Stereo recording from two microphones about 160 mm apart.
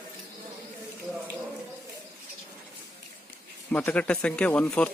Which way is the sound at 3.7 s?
10° left (ahead or behind).